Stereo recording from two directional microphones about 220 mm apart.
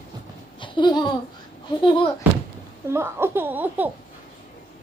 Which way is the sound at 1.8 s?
20° left (ahead or behind).